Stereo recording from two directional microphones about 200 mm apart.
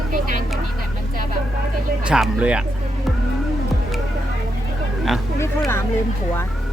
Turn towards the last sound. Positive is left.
turn(degrees=15)  # may be behind; listen again after turning